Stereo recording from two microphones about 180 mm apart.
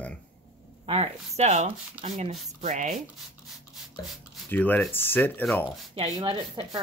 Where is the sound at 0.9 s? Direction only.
35° right (ahead or behind).